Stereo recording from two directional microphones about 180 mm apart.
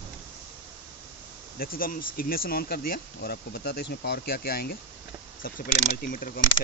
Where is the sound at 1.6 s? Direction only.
55° left (ahead or behind).